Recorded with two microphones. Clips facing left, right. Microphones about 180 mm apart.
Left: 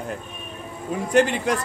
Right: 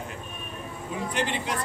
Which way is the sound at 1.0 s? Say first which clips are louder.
Left 11 dB; 45° left (ahead or behind).